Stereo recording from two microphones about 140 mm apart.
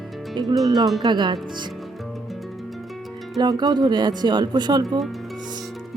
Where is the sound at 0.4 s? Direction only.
35° right (ahead or behind).